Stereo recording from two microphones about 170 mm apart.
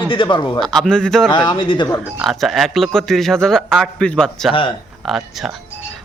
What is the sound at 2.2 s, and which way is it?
Speech, centre (ahead or behind).